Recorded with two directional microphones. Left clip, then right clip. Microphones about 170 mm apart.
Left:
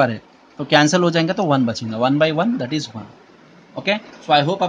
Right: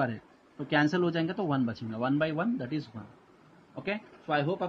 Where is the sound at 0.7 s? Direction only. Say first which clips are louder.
Left 13 dB; 30° left (ahead or behind).